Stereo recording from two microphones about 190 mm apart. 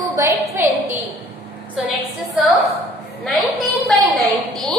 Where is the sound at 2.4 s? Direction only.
Centre (ahead or behind).